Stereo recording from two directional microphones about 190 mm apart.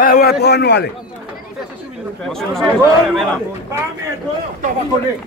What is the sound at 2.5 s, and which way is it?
Speech, centre (ahead or behind).